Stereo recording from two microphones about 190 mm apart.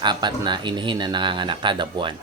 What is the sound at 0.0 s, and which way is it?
Speech, 25° right (ahead or behind).